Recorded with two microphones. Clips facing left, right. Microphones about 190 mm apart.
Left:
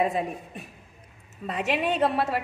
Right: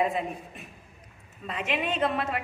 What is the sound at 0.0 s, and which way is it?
A woman's voice, 40° left (ahead or behind).